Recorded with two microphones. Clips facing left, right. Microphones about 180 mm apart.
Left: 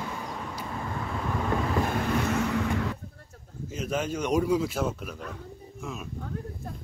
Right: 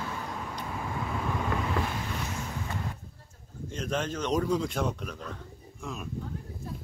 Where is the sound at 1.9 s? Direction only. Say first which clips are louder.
Left 9 dB; 70° left (ahead or behind); by 2.9 s 90° left.